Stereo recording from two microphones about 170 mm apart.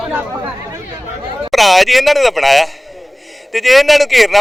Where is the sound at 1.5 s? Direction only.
Centre (ahead or behind).